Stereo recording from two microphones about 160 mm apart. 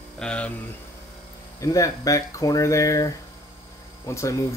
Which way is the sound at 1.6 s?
20° left (ahead or behind).